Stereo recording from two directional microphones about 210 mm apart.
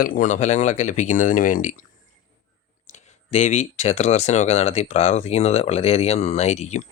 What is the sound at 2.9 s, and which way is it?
Speech, 35° left (ahead or behind).